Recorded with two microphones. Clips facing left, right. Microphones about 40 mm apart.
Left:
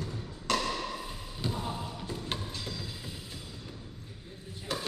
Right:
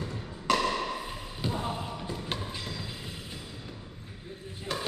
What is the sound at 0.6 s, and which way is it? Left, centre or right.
Thump, right.